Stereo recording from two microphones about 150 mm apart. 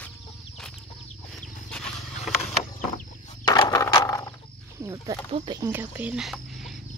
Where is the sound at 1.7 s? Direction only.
5° left (ahead or behind).